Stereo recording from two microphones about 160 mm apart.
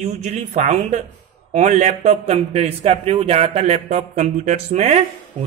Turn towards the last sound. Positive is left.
turn(degrees=-45)  # may be behind; listen again after turning